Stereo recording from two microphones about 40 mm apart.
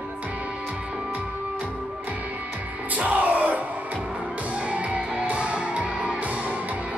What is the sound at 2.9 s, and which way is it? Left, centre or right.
Music, right.